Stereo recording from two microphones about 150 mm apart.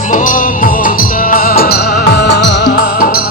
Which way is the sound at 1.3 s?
85° left.